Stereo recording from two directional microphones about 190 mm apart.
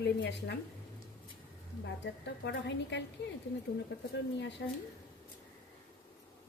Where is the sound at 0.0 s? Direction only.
65° left (ahead or behind).